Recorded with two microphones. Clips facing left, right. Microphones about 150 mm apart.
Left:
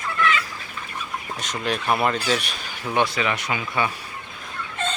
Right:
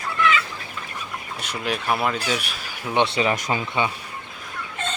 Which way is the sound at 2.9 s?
25° right (ahead or behind).